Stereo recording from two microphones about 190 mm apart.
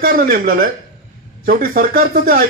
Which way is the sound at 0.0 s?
50° right (ahead or behind).